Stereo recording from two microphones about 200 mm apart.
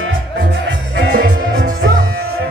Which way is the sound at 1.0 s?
55° right (ahead or behind).